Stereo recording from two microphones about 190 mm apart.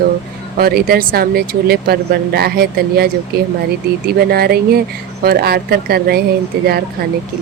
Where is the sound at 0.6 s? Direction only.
50° right (ahead or behind).